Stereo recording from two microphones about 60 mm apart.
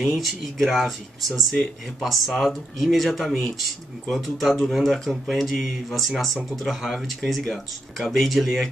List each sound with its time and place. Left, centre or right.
0.0 s speech: centre